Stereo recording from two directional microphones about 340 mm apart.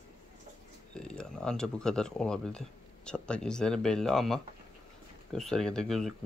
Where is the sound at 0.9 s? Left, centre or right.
Centre.